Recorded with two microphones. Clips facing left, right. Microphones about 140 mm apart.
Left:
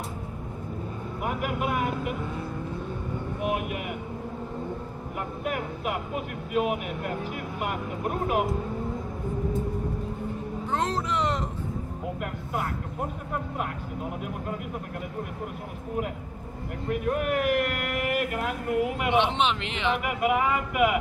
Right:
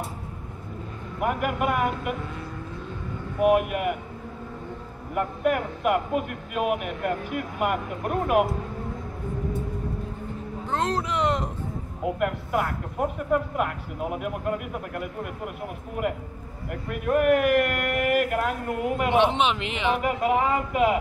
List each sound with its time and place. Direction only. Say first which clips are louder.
1.2 s speech: right 4 dB; 55° right (ahead or behind)
3.3 s speech: right 10 dB; 55° right (ahead or behind)
5.1 s speech: right 7 dB; 55° right (ahead or behind)
10.7 s vehicle: right 2 dB; 5° left (ahead or behind)
11.1 s speech: right 4 dB; 10° right (ahead or behind)
12.2 s speech: right 7 dB; 75° right (ahead or behind)
16.9 s speech: right 5 dB; 55° right (ahead or behind); by 19.3 s 40° right (ahead or behind)
19.3 s speech: right 2 dB; 5° right (ahead or behind)
19.9 s speech: right 2 dB; 35° right (ahead or behind)